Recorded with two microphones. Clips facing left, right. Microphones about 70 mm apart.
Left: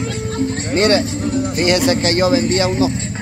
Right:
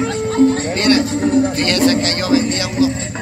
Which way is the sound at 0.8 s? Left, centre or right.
Left.